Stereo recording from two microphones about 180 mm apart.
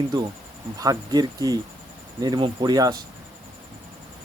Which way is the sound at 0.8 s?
20° right (ahead or behind).